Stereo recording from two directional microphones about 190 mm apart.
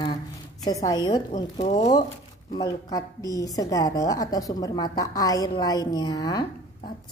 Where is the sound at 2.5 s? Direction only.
20° left (ahead or behind).